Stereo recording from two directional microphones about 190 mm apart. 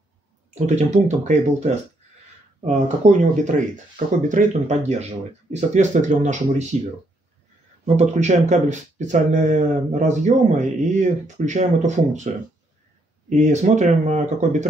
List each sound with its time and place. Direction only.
0.7 s speech: 35° right (ahead or behind)
7.8 s speech: 35° right (ahead or behind)
13.3 s speech: 40° right (ahead or behind)